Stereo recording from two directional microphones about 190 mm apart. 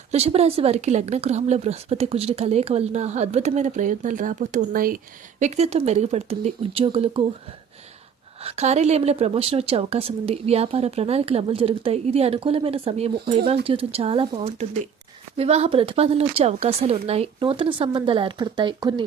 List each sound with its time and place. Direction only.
0.1 s a woman's voice: 30° right (ahead or behind); by 4.9 s 50° right (ahead or behind)
5.4 s a woman's voice: 35° right (ahead or behind)
8.4 s a woman's voice: 35° right (ahead or behind)